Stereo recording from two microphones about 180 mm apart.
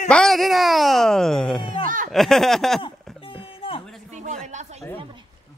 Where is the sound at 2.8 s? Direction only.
30° left (ahead or behind).